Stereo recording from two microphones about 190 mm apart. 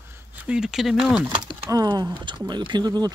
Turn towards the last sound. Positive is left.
turn(degrees=-20)  # may be behind; listen again after turning